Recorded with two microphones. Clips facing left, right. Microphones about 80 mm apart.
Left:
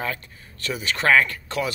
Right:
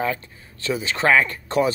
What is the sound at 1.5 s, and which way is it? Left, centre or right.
Speech, right.